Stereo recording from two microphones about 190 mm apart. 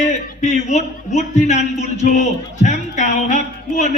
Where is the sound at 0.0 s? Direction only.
35° left (ahead or behind).